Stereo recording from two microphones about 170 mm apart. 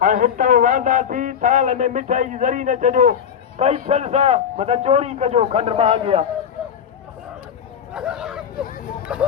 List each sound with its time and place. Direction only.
0.0 s speech: 50° right (ahead or behind)
3.6 s a man's voice: 40° right (ahead or behind)
7.9 s hubbub: 5° right (ahead or behind)
9.1 s a sound: 5° right (ahead or behind)